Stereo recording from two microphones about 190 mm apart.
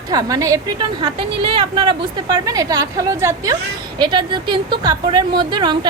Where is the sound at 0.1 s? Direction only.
20° right (ahead or behind).